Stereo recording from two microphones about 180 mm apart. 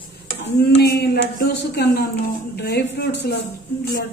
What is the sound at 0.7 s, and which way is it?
Speech, 70° left (ahead or behind).